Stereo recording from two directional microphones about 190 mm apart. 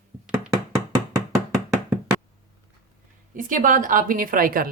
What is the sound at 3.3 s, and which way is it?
A woman's voice, 45° right (ahead or behind).